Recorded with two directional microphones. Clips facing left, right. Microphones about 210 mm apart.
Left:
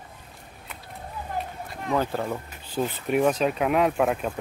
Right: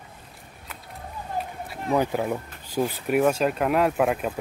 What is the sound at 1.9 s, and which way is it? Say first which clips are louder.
Speech: right 3 dB; 15° right (ahead or behind).